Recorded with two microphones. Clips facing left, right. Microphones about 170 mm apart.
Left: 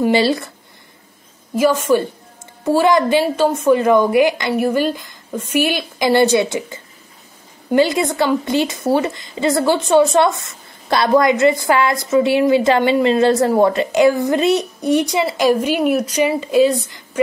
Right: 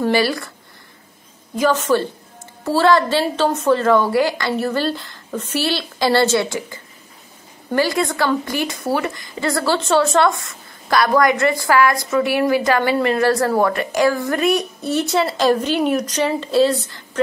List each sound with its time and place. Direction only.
0.0 s a woman's voice: 25° left (ahead or behind)
1.6 s a woman's voice: 10° left (ahead or behind)